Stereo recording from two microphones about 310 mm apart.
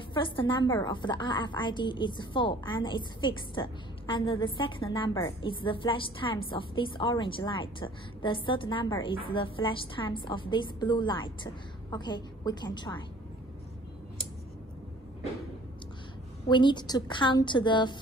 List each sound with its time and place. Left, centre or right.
0.1 s a woman's voice: centre
16.4 s a woman's voice: centre